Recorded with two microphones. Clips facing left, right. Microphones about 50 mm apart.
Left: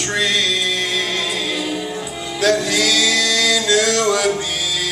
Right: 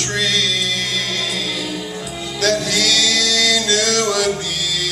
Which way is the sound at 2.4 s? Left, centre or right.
Centre.